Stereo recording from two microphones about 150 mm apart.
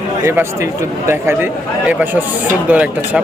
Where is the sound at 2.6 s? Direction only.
10° right (ahead or behind).